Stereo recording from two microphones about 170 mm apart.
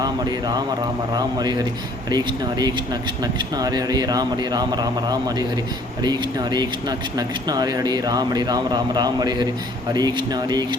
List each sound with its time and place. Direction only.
0.0 s speech: 25° right (ahead or behind)